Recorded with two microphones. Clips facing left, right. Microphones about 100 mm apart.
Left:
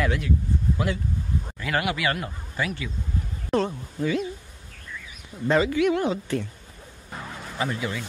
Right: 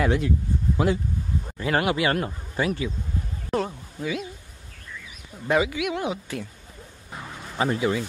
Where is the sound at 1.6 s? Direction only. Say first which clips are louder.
Right 3 dB; 30° right (ahead or behind).